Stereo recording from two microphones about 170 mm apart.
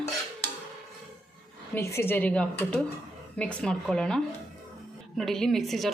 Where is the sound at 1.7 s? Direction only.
15° left (ahead or behind).